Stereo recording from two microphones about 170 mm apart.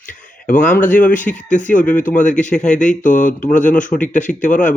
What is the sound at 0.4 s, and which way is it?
Speech, 50° left (ahead or behind).